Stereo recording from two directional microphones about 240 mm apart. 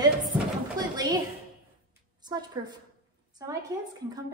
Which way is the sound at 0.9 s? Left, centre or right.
Centre.